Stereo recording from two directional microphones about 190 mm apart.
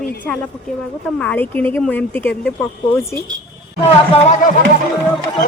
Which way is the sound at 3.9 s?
30° left (ahead or behind).